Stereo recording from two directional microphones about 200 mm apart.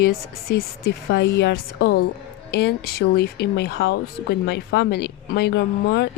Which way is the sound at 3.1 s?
55° left (ahead or behind).